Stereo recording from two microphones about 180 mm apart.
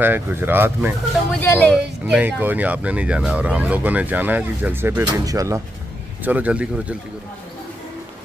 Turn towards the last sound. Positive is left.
turn(degrees=-5)  # may be behind; listen again after turning